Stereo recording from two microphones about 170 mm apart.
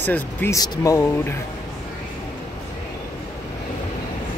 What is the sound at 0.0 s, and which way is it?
Speech, 10° left (ahead or behind).